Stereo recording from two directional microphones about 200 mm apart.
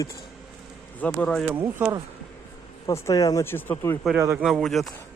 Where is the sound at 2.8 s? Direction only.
15° left (ahead or behind).